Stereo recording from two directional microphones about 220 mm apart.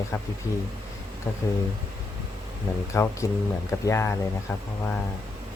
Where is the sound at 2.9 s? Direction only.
10° left (ahead or behind).